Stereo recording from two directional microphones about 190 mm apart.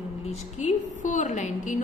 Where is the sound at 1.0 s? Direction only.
40° left (ahead or behind).